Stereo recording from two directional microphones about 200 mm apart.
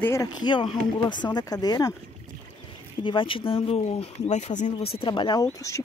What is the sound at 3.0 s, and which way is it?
Speech, 25° left (ahead or behind).